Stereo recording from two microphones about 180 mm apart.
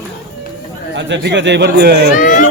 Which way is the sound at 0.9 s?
80° right.